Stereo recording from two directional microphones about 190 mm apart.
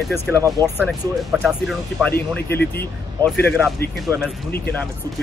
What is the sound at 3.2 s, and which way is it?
Speech, 10° left (ahead or behind).